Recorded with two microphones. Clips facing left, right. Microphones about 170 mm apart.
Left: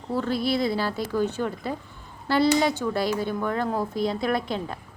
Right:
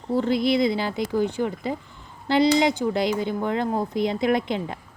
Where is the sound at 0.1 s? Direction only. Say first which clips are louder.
Right 4 dB; 15° right (ahead or behind).